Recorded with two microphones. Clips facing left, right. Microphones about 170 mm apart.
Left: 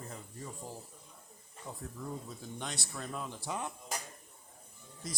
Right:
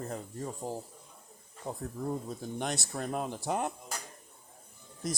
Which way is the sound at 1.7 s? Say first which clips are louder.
Right 7 dB; 45° right (ahead or behind).